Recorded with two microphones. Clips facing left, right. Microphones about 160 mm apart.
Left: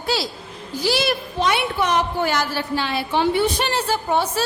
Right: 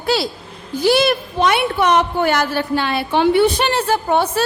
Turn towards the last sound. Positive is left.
turn(degrees=-60)  # may be behind; listen again after turning